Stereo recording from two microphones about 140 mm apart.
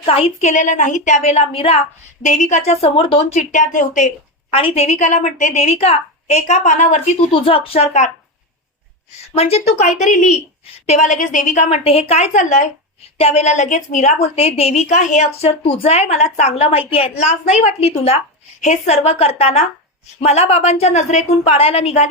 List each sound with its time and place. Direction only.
0.0 s a woman's voice: 45° left (ahead or behind)
2.2 s a woman's voice: 55° left (ahead or behind)
4.5 s a woman's voice: 45° left (ahead or behind)
7.3 s speech: 40° left (ahead or behind)
9.3 s a woman's voice: 45° left (ahead or behind)
13.1 s a woman's voice: 45° left (ahead or behind)